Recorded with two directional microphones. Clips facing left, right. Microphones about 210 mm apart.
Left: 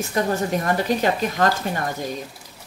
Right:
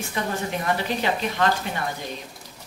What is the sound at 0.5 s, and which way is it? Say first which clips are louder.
A woman's voice: left 4 dB; 45° left (ahead or behind).